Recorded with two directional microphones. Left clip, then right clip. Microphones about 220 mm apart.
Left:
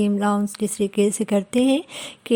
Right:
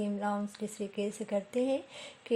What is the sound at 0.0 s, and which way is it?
Speech, 35° left (ahead or behind).